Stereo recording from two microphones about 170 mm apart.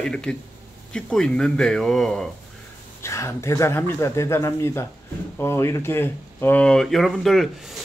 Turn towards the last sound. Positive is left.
turn(degrees=0)  # may be behind; listen again after turning